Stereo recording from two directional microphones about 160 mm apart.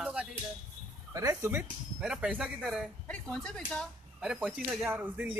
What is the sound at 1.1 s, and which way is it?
Speech, 15° right (ahead or behind).